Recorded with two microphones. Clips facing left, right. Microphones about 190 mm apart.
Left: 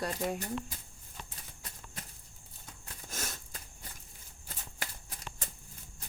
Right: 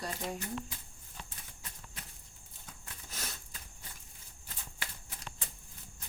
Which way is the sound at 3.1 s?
45° left (ahead or behind).